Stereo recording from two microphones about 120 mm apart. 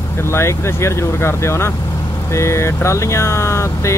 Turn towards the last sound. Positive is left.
turn(degrees=25)  # may be behind; listen again after turning